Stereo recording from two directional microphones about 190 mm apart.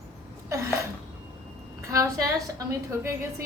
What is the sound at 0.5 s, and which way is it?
Sneeze, 15° right (ahead or behind).